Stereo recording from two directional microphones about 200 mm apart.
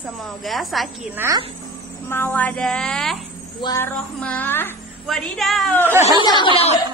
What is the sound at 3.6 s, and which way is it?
Speech, 15° left (ahead or behind).